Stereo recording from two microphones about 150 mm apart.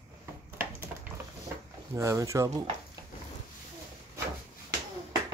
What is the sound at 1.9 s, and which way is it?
Speech, 20° right (ahead or behind).